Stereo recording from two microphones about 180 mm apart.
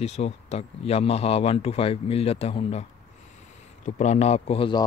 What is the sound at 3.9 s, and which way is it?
Speech, 40° left (ahead or behind).